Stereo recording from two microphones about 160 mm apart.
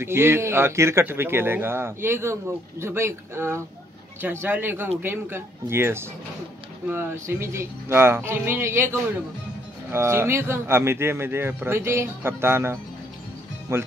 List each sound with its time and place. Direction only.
0.0 s speech: 15° right (ahead or behind)
9.8 s speech: 15° right (ahead or behind)